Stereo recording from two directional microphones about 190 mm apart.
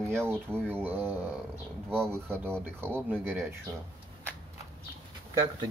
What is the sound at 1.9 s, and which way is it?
Speech, 5° left (ahead or behind).